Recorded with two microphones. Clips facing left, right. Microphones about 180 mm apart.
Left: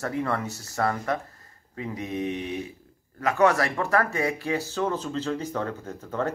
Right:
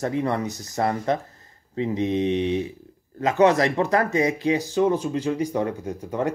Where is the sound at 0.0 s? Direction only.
20° right (ahead or behind).